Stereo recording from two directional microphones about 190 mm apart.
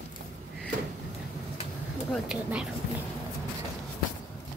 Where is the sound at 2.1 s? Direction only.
5° right (ahead or behind).